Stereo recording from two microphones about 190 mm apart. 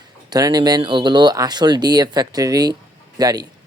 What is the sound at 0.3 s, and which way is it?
A man's voice, 20° right (ahead or behind).